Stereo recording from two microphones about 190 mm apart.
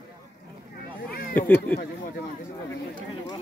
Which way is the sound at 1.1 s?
50° left (ahead or behind).